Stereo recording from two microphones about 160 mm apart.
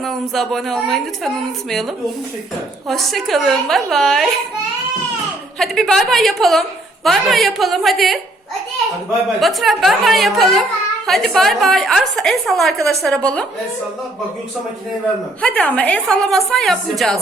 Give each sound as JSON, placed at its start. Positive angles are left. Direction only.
{"t": 0.0, "sound": "a child's voice", "side_deg": 0}
{"t": 2.8, "sound": "a child's voice", "side_deg": 0}
{"t": 5.5, "sound": "a child's voice", "side_deg": 0}
{"t": 9.4, "sound": "a child's voice", "side_deg": 0}
{"t": 15.4, "sound": "a woman's voice", "side_deg": 5}